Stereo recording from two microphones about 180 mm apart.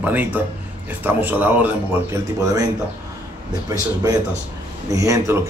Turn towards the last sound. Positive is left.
turn(degrees=-15)  # may be behind; listen again after turning